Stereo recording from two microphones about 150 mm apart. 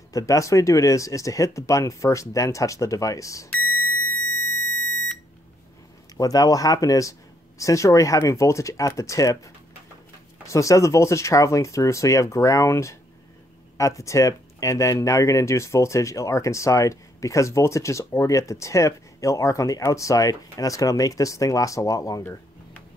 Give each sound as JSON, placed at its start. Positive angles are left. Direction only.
{"t": 0.1, "sound": "speech", "side_deg": 20}
{"t": 3.5, "sound": "alarm", "side_deg": 15}
{"t": 6.1, "sound": "speech", "side_deg": 25}